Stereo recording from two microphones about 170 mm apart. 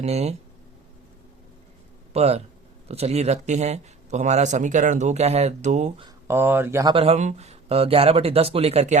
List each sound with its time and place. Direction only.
0.0 s speech: 40° right (ahead or behind)
2.1 s speech: 35° right (ahead or behind)
6.2 s speech: 15° right (ahead or behind)
6.9 s speech: 35° right (ahead or behind)